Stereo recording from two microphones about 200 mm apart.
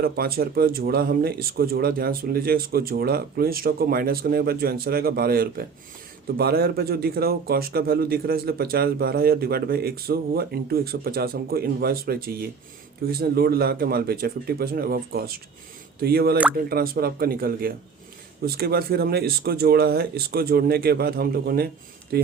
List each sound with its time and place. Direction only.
0.0 s a man's voice: 50° right (ahead or behind)